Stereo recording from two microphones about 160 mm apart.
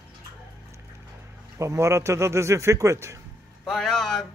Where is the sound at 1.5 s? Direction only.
20° right (ahead or behind).